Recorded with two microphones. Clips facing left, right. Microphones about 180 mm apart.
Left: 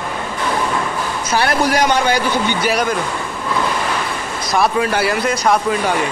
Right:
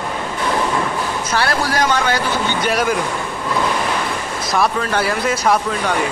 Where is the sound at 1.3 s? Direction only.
15° left (ahead or behind).